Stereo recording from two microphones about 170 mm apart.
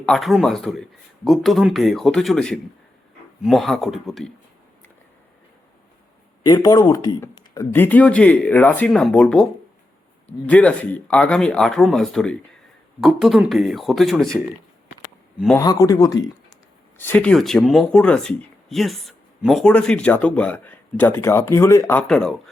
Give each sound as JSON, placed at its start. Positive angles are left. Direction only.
{"t": 0.0, "sound": "speech", "side_deg": 0}
{"t": 6.4, "sound": "speech", "side_deg": 20}
{"t": 15.5, "sound": "speech", "side_deg": 20}
{"t": 17.0, "sound": "speech", "side_deg": 10}
{"t": 22.0, "sound": "speech", "side_deg": 5}